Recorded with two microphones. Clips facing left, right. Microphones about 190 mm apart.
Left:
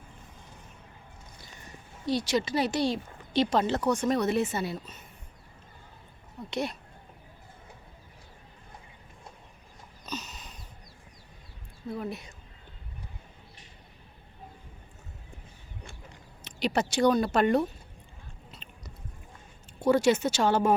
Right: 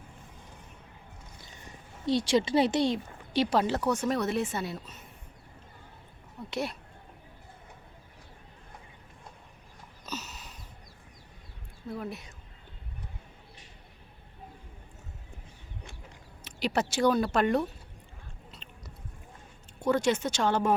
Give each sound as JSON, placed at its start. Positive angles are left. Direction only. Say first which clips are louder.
{"t": 2.0, "sound": "speech", "louder": "right 2 dB", "side_deg": -25}
{"t": 3.3, "sound": "speech", "louder": "left 1 dB", "side_deg": -10}
{"t": 6.5, "sound": "speech", "louder": "left 1 dB", "side_deg": -5}
{"t": 10.1, "sound": "a sound", "louder": "left 1 dB", "side_deg": -5}
{"t": 11.9, "sound": "speech", "louder": "left 2 dB", "side_deg": 0}
{"t": 16.4, "sound": "speech", "louder": "left 1 dB", "side_deg": -5}
{"t": 18.5, "sound": "biting", "louder": "even", "side_deg": 0}
{"t": 19.8, "sound": "speech", "louder": "left 3 dB", "side_deg": 5}